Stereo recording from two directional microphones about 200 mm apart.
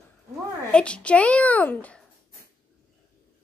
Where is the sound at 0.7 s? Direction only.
5° left (ahead or behind).